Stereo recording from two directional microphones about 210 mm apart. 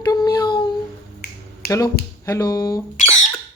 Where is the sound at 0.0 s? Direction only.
20° left (ahead or behind).